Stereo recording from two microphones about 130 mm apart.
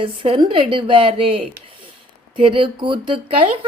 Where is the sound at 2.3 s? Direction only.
40° right (ahead or behind).